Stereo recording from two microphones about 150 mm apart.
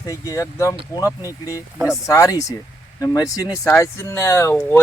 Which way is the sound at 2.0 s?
20° left (ahead or behind).